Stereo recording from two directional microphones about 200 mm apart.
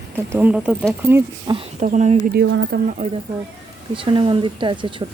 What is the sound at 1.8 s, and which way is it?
Speech, 35° right (ahead or behind).